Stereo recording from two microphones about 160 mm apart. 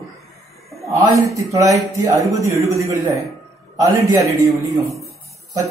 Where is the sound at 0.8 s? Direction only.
20° right (ahead or behind).